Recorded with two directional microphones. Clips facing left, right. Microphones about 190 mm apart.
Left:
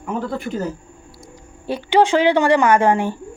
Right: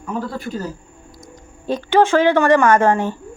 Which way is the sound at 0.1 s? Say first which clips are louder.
Left 1 dB; 20° left (ahead or behind).